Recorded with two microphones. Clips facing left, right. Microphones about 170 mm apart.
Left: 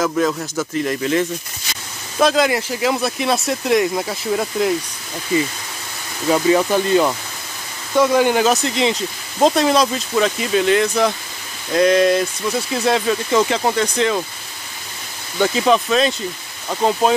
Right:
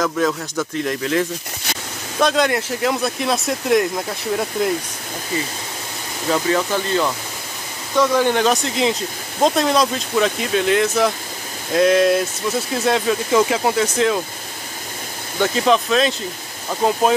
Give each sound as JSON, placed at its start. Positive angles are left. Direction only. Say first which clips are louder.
{"t": 0.0, "sound": "speech", "louder": "left 1 dB", "side_deg": 5}
{"t": 6.3, "sound": "speech", "louder": "left 4 dB", "side_deg": 15}
{"t": 15.3, "sound": "speech", "louder": "left 1 dB", "side_deg": 0}